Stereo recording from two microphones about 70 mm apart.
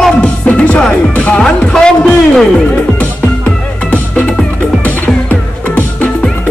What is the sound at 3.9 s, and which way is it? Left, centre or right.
Music, left.